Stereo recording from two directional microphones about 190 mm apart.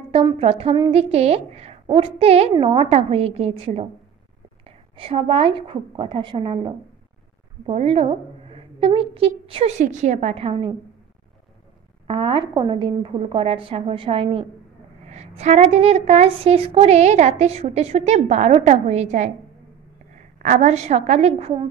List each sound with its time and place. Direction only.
0.1 s a woman's voice: 30° right (ahead or behind)
12.1 s a woman's voice: 25° right (ahead or behind)
20.4 s a woman's voice: 40° right (ahead or behind)